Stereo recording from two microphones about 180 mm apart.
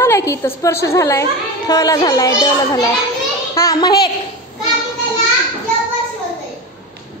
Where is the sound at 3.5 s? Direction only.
20° left (ahead or behind).